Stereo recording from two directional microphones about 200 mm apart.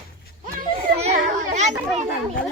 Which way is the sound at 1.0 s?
35° right (ahead or behind).